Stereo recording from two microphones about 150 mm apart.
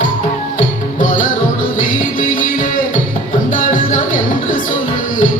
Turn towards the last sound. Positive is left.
turn(degrees=60)  # may be behind; listen again after turning